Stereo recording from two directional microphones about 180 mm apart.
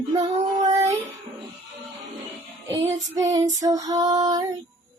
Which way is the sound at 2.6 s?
15° right (ahead or behind).